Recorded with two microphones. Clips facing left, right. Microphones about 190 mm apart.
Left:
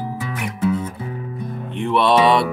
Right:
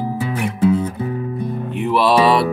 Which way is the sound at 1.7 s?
5° right (ahead or behind).